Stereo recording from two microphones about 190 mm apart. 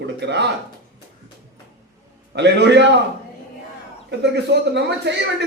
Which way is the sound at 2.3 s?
65° right (ahead or behind).